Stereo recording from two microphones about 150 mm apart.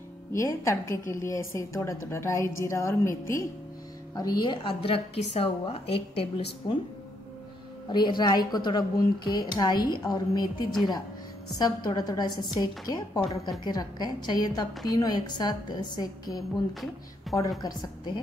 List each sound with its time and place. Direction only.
0.3 s a woman's voice: 20° left (ahead or behind); by 6.8 s 40° left (ahead or behind)
7.9 s speech: 30° left (ahead or behind)
11.5 s speech: 25° left (ahead or behind)
17.6 s speech: 30° left (ahead or behind)